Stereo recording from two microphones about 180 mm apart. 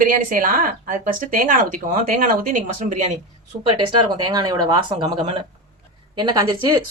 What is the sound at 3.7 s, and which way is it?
Speech, 30° right (ahead or behind).